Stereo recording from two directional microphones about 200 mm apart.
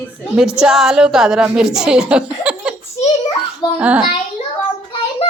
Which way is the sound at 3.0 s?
35° left (ahead or behind).